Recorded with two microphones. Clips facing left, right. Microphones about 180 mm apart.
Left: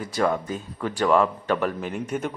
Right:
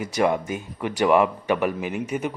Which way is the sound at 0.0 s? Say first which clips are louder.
Right 2 dB; 15° right (ahead or behind).